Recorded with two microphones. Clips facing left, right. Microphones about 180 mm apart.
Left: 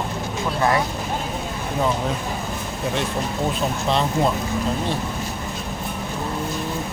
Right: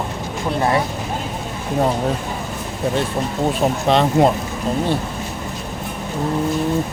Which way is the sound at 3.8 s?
60° right (ahead or behind).